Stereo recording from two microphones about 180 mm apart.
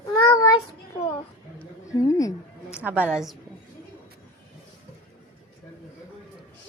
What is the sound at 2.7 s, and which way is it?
Speech, 10° right (ahead or behind).